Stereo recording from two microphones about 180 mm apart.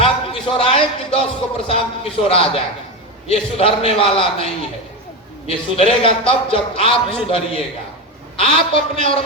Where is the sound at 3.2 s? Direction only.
35° left (ahead or behind).